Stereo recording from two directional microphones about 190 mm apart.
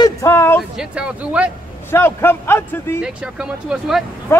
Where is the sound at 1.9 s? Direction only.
10° left (ahead or behind).